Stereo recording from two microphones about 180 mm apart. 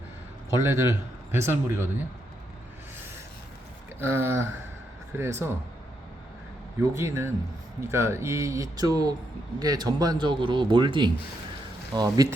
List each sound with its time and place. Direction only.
0.6 s speech: 15° right (ahead or behind)
4.0 s speech: 15° right (ahead or behind)
6.9 s a man's voice: 15° right (ahead or behind)